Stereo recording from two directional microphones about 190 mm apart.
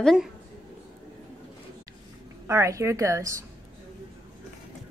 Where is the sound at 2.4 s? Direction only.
15° right (ahead or behind).